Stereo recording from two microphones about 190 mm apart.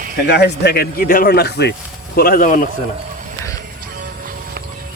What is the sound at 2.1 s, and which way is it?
Speech, 50° left (ahead or behind).